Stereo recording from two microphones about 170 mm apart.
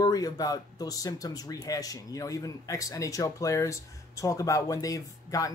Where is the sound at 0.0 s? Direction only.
20° left (ahead or behind).